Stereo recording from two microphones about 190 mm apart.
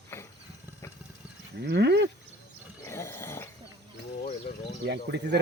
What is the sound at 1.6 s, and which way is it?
Speech, 60° right (ahead or behind).